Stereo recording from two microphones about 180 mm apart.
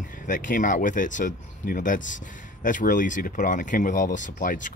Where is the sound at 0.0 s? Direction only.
45° left (ahead or behind).